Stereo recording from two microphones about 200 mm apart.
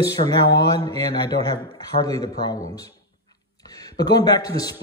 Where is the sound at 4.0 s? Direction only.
20° left (ahead or behind).